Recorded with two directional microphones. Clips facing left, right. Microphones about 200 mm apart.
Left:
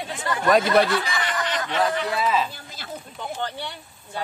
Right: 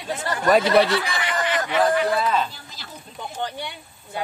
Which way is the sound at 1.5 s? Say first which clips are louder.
Right 5 dB; 10° right (ahead or behind).